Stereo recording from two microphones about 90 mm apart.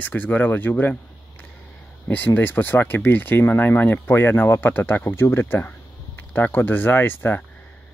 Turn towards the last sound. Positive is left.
turn(degrees=25)  # may be behind; listen again after turning